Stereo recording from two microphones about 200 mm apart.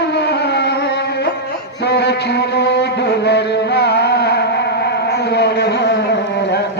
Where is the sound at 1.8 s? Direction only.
55° left (ahead or behind).